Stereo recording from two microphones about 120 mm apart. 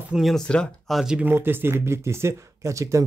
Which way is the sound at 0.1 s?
Centre (ahead or behind).